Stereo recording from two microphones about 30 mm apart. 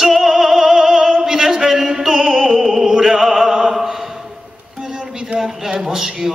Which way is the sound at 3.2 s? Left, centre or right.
Centre.